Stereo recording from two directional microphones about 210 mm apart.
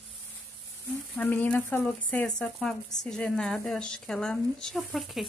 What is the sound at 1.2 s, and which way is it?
Speech, 10° left (ahead or behind).